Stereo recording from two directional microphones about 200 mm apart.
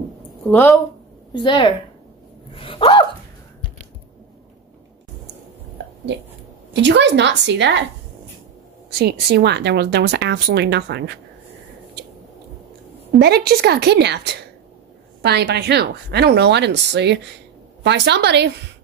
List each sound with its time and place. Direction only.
0.5 s a woman's voice: 15° left (ahead or behind)
1.3 s a sound: 25° left (ahead or behind)
6.7 s a woman's voice: 60° right (ahead or behind)
8.9 s a woman's voice: 55° right (ahead or behind)
13.2 s a woman's voice: 55° right (ahead or behind)